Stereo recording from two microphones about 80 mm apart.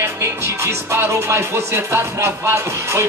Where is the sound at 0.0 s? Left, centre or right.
Right.